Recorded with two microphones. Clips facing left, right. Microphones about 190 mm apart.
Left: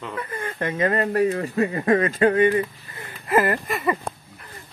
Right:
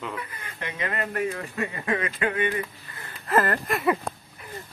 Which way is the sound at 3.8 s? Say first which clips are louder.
Even; centre (ahead or behind).